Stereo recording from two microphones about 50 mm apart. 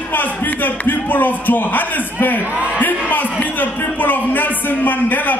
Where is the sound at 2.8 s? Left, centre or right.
Left.